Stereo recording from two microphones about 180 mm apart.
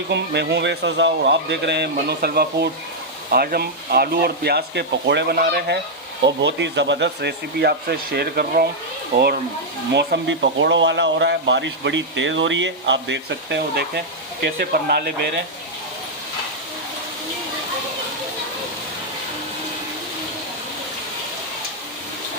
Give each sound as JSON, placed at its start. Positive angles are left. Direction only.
{"t": 0.1, "sound": "speech", "side_deg": -70}
{"t": 6.2, "sound": "speech", "side_deg": -75}
{"t": 9.9, "sound": "speech", "side_deg": -70}